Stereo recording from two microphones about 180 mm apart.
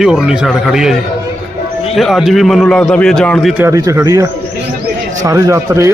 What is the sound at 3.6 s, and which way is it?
A man's voice, 15° right (ahead or behind).